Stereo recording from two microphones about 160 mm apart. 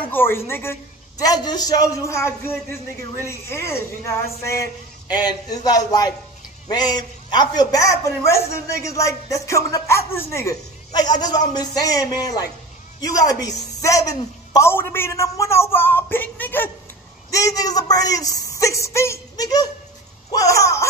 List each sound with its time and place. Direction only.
0.0 s a woman's voice: 15° left (ahead or behind)